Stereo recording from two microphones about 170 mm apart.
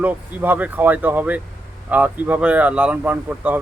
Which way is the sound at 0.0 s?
10° right (ahead or behind).